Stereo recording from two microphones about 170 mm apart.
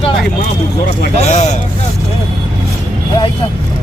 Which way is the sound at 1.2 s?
40° left (ahead or behind).